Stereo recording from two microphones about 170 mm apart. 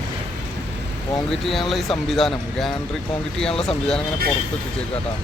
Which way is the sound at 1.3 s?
Centre (ahead or behind).